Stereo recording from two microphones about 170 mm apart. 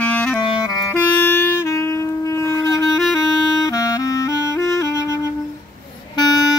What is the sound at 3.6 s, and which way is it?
Clarinet, 20° left (ahead or behind).